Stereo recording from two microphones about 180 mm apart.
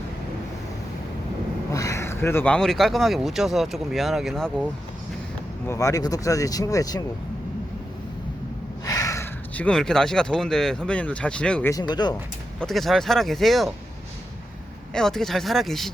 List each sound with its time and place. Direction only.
1.7 s speech: 15° left (ahead or behind); by 4.7 s centre (ahead or behind)
5.6 s speech: 15° left (ahead or behind)
8.8 s speech: 20° left (ahead or behind)
11.7 s speech: 25° left (ahead or behind)
12.5 s speech: centre (ahead or behind)
14.9 s speech: 5° left (ahead or behind)